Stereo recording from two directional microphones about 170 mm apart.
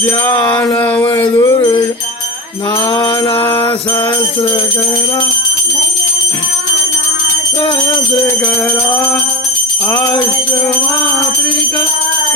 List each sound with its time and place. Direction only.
0.5 s a sound: 20° left (ahead or behind)
1.0 s music: 25° left (ahead or behind)
3.0 s music: 30° left (ahead or behind)